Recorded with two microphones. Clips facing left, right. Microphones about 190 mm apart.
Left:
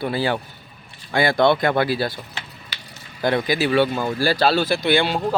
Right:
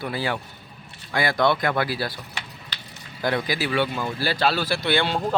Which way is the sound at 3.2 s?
25° left (ahead or behind).